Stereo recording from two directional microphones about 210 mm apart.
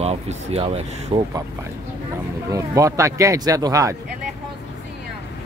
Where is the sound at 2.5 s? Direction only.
15° right (ahead or behind).